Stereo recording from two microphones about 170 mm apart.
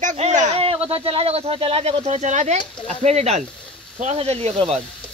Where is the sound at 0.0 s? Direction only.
45° right (ahead or behind).